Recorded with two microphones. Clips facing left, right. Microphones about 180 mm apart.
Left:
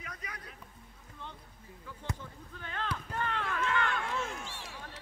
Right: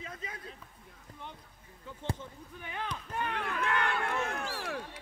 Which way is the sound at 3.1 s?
15° right (ahead or behind).